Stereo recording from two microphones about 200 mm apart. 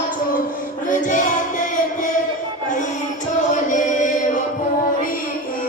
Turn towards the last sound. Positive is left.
turn(degrees=40)  # may be behind; listen again after turning